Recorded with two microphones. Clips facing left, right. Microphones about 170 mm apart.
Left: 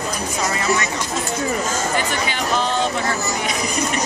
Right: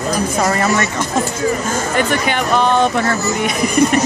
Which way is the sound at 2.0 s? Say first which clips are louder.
Right 6 dB; 60° right (ahead or behind).